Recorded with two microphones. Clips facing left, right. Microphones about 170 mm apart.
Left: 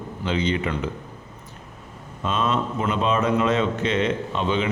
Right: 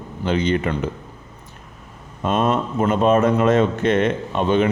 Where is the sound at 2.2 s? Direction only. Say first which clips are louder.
Right 4 dB; 50° right (ahead or behind).